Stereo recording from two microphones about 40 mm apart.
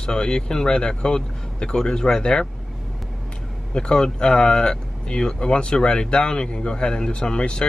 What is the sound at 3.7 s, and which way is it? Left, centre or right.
Speech, left.